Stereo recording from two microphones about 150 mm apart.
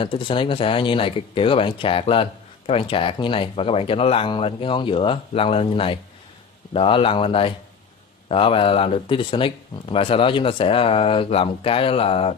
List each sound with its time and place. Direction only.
0.0 s speech: 35° left (ahead or behind)